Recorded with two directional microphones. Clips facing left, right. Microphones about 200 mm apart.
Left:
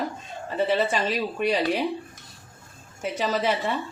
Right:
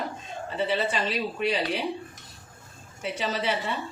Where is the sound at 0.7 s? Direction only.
50° left (ahead or behind).